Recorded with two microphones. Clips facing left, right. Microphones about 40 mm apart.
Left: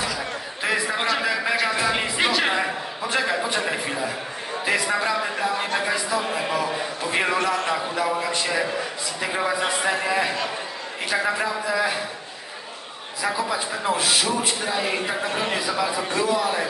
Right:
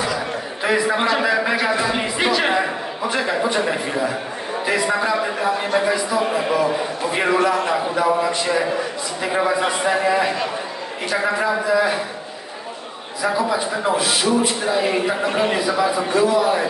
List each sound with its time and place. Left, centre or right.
0.9 s a man's voice: centre
7.3 s a man's voice: right
7.9 s a man's voice: centre
13.2 s a man's voice: centre
15.2 s a man's voice: centre